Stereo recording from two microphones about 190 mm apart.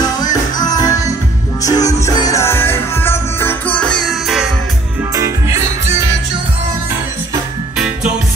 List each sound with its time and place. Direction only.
0.2 s music: 20° left (ahead or behind); by 4.5 s centre (ahead or behind)
5.1 s music: 15° right (ahead or behind)